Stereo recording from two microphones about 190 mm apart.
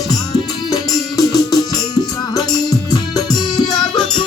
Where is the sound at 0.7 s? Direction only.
20° left (ahead or behind).